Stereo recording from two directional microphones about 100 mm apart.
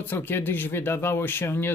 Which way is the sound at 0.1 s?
20° left (ahead or behind).